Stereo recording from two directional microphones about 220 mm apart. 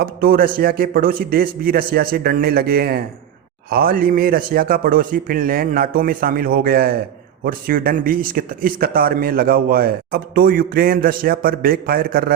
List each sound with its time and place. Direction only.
0.0 s a man's voice: 45° right (ahead or behind)